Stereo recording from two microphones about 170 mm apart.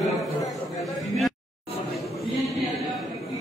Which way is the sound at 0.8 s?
Centre (ahead or behind).